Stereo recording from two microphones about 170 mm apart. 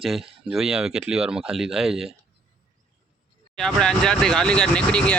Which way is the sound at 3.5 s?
5° left (ahead or behind).